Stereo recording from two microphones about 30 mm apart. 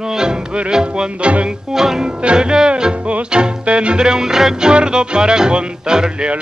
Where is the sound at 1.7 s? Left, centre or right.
Centre; by 4.0 s right.